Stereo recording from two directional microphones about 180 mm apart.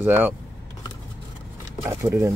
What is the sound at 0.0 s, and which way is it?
Speech, 10° right (ahead or behind).